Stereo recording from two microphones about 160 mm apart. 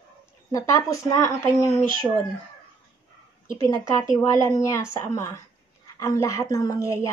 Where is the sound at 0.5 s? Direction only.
20° left (ahead or behind).